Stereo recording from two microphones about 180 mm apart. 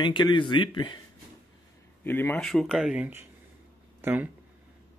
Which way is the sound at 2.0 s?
10° left (ahead or behind).